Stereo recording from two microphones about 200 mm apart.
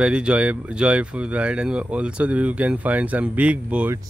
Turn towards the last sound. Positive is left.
turn(degrees=-5)  # may be behind; listen again after turning